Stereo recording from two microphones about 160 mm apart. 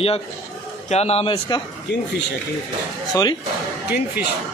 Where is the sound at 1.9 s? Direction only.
90° left.